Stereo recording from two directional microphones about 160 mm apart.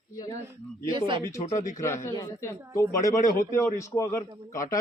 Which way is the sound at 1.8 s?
15° left (ahead or behind).